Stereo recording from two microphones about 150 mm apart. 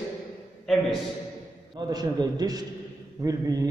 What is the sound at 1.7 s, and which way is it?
A man's voice, 25° right (ahead or behind).